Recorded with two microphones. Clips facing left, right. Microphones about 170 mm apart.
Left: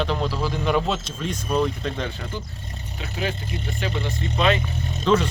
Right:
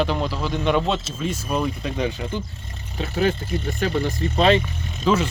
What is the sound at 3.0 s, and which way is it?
Speech, 45° right (ahead or behind).